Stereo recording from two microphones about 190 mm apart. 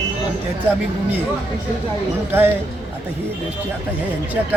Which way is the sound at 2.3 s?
10° right (ahead or behind).